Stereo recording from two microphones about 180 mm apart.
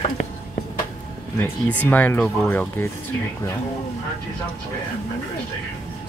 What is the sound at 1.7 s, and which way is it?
Speech, 10° left (ahead or behind).